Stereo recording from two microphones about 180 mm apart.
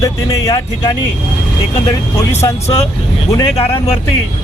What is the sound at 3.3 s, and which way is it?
Speech, 20° left (ahead or behind).